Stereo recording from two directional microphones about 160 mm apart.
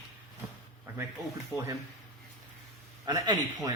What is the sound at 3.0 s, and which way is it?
Speech, 25° right (ahead or behind).